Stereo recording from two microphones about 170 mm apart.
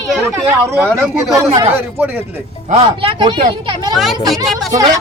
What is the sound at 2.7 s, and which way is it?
Speech, 35° right (ahead or behind).